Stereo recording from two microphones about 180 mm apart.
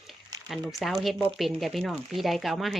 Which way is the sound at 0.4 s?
Centre (ahead or behind).